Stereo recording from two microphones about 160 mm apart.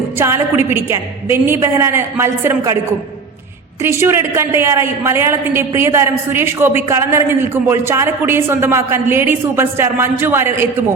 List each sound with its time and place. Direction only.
0.2 s a woman's voice: 15° right (ahead or behind)
3.8 s a woman's voice: 15° right (ahead or behind)